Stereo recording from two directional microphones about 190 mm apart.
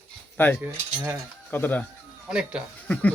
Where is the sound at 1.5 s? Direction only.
10° left (ahead or behind).